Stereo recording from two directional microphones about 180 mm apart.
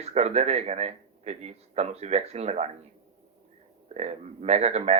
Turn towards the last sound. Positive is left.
turn(degrees=-35)  # may be behind; listen again after turning